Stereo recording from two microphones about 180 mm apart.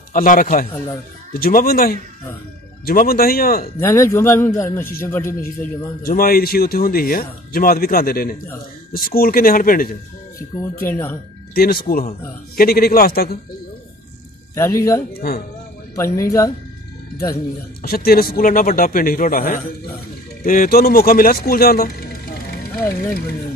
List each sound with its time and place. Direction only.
0.1 s a man's voice: 50° left (ahead or behind)
3.8 s speech: 15° left (ahead or behind)
6.0 s speech: 55° left (ahead or behind)
10.8 s speech: 10° left (ahead or behind)
11.5 s speech: 60° left (ahead or behind)
14.5 s speech: 15° left (ahead or behind)
15.1 s speech: 60° left (ahead or behind)
15.9 s speech: 15° left (ahead or behind)
17.8 s a man's voice: 55° left (ahead or behind)